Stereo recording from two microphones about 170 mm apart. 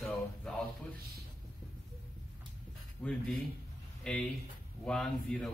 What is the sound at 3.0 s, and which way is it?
A man's voice, 5° left (ahead or behind).